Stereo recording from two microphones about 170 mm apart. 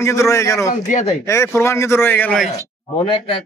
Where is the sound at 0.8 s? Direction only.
45° left (ahead or behind).